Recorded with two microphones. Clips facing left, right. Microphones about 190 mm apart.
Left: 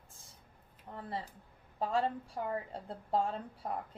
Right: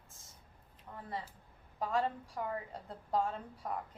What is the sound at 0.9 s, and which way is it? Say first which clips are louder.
A woman's voice: left 2 dB; 30° left (ahead or behind).